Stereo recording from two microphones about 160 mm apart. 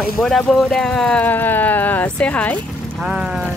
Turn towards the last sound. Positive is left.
turn(degrees=-5)  # may be behind; listen again after turning